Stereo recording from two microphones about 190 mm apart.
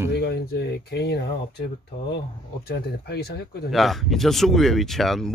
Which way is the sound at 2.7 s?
55° left (ahead or behind).